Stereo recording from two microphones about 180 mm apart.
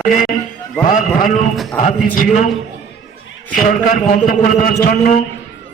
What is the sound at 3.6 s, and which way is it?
A man's voice, 50° left (ahead or behind).